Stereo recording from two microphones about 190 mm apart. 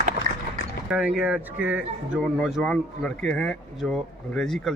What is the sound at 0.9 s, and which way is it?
A man's voice, 5° right (ahead or behind).